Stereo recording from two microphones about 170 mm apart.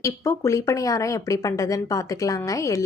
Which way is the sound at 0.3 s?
20° left (ahead or behind).